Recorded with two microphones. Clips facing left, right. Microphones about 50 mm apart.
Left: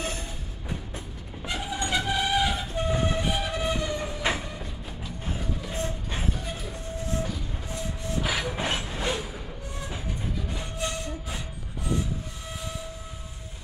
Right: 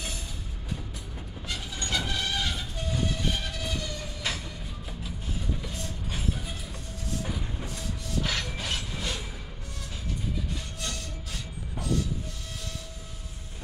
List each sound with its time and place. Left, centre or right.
1.5 s train: centre
2.7 s train: left
3.3 s music: centre
3.5 s train: left
5.2 s music: left
5.7 s train: left
7.6 s printer: left
8.2 s mechanisms: centre
8.5 s train: left
10.8 s music: left